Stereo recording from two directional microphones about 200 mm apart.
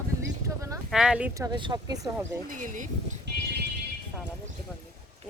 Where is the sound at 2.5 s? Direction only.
40° right (ahead or behind).